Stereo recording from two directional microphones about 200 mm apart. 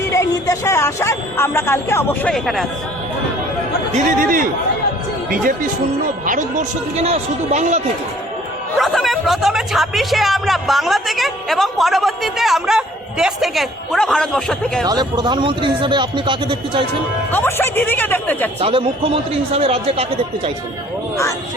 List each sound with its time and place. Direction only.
0.1 s speech: 15° left (ahead or behind)
3.9 s speech: 45° right (ahead or behind)
6.2 s speech: 40° right (ahead or behind)
8.8 s speech: centre (ahead or behind)
14.8 s a man's voice: 20° right (ahead or behind)
17.3 s speech: 10° left (ahead or behind)
18.6 s a man's voice: 25° right (ahead or behind)